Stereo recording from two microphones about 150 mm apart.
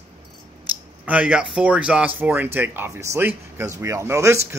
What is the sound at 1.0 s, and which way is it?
Speech, 10° right (ahead or behind).